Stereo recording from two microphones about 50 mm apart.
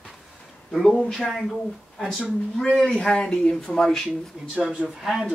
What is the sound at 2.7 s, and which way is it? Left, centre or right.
Speech, centre.